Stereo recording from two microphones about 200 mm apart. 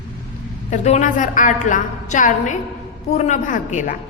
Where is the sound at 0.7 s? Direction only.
35° left (ahead or behind).